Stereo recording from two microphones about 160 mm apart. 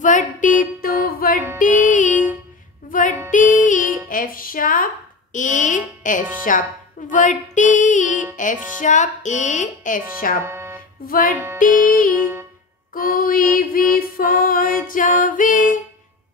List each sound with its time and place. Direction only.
0.0 s a sound: 55° left (ahead or behind)
1.6 s music: 55° left (ahead or behind)
6.0 s speech: 55° left (ahead or behind)
6.5 s music: 55° left (ahead or behind)
10.4 s music: 15° right (ahead or behind)
11.1 s music: 60° left (ahead or behind)
12.2 s music: 10° right (ahead or behind)
12.9 s music: 60° left (ahead or behind)